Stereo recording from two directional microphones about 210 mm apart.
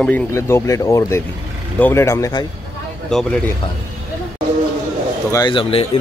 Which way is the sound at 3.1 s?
5° left (ahead or behind).